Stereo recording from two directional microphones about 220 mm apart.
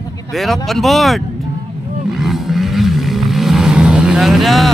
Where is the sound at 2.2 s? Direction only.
Centre (ahead or behind).